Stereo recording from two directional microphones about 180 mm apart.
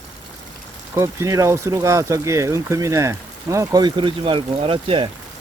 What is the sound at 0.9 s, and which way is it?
Speech, 15° right (ahead or behind).